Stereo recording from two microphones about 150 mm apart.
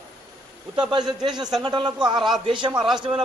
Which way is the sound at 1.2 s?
30° right (ahead or behind).